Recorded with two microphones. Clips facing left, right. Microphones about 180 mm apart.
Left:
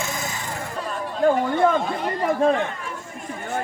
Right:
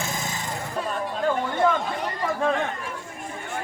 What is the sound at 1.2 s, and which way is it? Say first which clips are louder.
Chatter: left 5 dB; 40° left (ahead or behind).